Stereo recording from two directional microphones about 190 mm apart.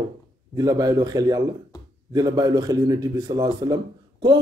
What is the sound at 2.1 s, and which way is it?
A man's voice, 20° right (ahead or behind).